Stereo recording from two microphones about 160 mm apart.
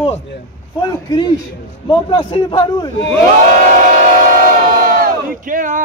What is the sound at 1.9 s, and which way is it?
A man's voice, 30° left (ahead or behind).